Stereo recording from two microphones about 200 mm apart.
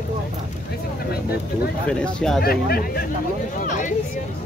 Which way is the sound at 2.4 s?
50° left (ahead or behind).